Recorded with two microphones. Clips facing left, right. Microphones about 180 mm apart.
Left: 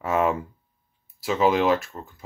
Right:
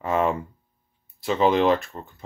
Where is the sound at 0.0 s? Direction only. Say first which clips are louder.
Even; 5° left (ahead or behind).